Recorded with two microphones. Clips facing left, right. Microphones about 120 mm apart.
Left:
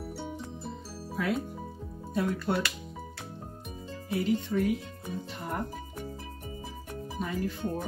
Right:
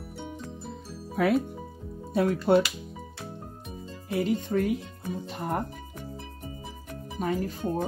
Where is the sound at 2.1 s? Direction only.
70° right (ahead or behind).